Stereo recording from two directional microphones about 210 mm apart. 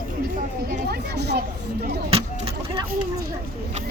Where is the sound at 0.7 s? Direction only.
50° right (ahead or behind).